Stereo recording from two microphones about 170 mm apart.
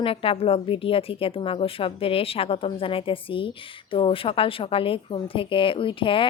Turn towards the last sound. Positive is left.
turn(degrees=30)  # may be behind; listen again after turning